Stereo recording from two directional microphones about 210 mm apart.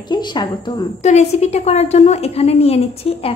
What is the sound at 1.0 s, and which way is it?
A woman's voice, 30° left (ahead or behind).